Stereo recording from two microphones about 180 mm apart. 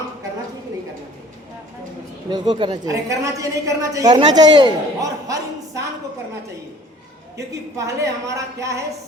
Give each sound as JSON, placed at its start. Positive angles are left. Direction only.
{"t": 2.3, "sound": "a woman's voice", "side_deg": -25}
{"t": 7.3, "sound": "speech", "side_deg": -15}